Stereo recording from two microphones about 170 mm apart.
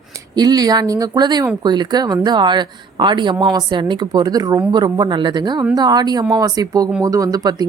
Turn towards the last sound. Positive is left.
turn(degrees=-20)  # may be behind; listen again after turning